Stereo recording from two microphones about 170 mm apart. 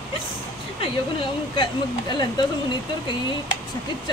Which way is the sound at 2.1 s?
25° left (ahead or behind).